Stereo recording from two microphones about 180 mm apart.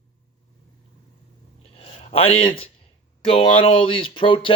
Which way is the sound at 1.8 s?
35° left (ahead or behind).